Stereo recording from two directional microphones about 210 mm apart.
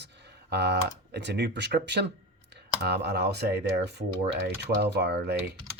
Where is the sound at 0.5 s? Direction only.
55° right (ahead or behind).